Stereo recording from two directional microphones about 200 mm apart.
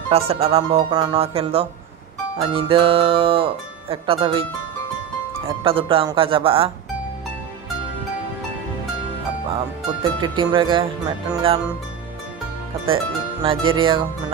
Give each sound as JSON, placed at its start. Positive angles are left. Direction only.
{"t": 0.3, "sound": "speech", "side_deg": -30}
{"t": 5.6, "sound": "speech", "side_deg": -25}
{"t": 10.2, "sound": "speech", "side_deg": -25}
{"t": 12.8, "sound": "speech", "side_deg": -25}